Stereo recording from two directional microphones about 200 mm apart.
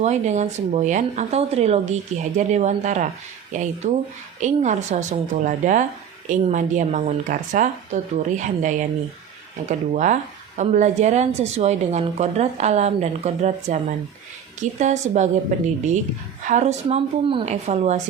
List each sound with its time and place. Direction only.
0.0 s a woman's voice: 35° right (ahead or behind)